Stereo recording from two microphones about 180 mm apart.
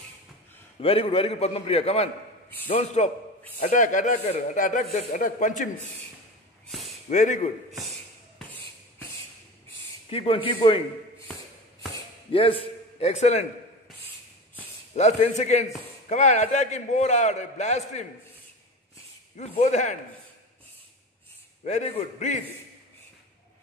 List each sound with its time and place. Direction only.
0.7 s a man's voice: 30° left (ahead or behind)
6.7 s a sound: centre (ahead or behind)
7.1 s speech: 45° left (ahead or behind)
10.0 s speech: 30° left (ahead or behind)
12.3 s a man's voice: 30° left (ahead or behind)
15.0 s a man's voice: 40° left (ahead or behind)
19.3 s a man's voice: 40° left (ahead or behind)
21.6 s a man's voice: 40° left (ahead or behind)